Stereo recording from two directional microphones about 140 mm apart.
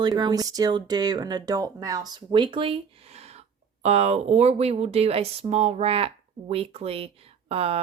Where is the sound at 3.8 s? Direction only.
50° right (ahead or behind).